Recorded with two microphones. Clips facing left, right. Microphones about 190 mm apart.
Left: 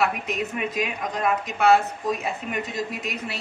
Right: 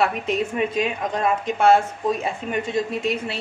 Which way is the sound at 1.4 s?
30° right (ahead or behind).